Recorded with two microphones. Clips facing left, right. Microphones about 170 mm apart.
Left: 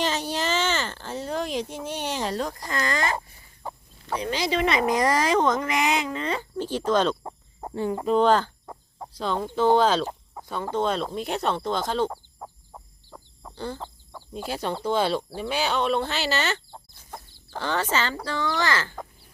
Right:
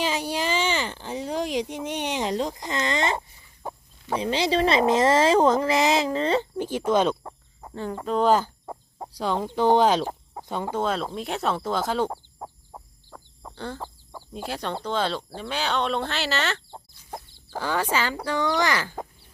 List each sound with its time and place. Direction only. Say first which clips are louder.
0.0 s a sound: even; 10° right (ahead or behind)
4.1 s speech: right 3 dB; 30° right (ahead or behind)
6.8 s speech: right 1 dB; 10° right (ahead or behind)
7.7 s speech: left 4 dB; 10° left (ahead or behind)
8.0 s speech: even; centre (ahead or behind)
13.4 s chicken: left 1 dB; centre (ahead or behind)
14.4 s speech: left 2 dB; 5° left (ahead or behind); by 18.9 s 15° right (ahead or behind)